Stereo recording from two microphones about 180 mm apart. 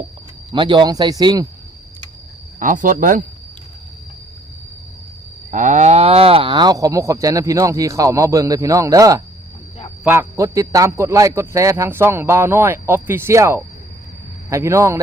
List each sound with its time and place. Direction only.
0.5 s cattle: 25° right (ahead or behind)
2.6 s speech: 45° right (ahead or behind)
5.5 s cattle: 45° right (ahead or behind); by 9.2 s 20° right (ahead or behind)
10.0 s a man's voice: 10° right (ahead or behind)